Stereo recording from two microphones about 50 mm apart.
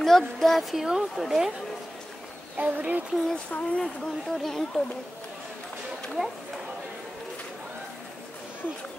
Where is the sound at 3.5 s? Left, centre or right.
Left.